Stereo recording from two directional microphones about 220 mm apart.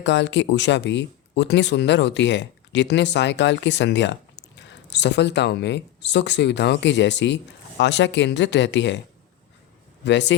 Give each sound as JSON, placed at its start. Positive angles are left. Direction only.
{"t": 0.0, "sound": "speech", "side_deg": 55}
{"t": 10.0, "sound": "speech", "side_deg": 55}